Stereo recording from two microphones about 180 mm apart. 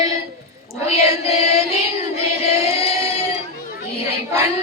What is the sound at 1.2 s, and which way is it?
Music, 35° left (ahead or behind).